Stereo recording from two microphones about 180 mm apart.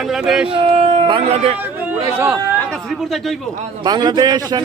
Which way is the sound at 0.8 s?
30° right (ahead or behind).